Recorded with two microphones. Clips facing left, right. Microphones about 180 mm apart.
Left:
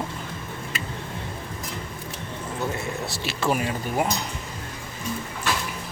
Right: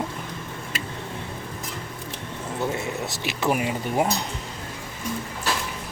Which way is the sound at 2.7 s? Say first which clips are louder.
Right 1 dB; 20° right (ahead or behind).